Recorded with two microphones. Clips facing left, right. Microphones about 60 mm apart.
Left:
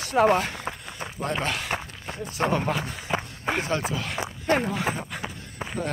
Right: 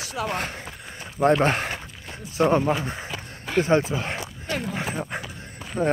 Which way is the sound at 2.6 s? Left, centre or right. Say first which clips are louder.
Right 2 dB; right.